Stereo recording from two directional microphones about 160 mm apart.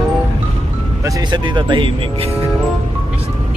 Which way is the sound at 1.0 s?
30° right (ahead or behind).